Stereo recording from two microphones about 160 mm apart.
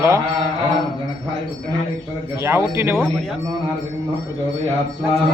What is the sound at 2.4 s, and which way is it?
Speech, 15° right (ahead or behind).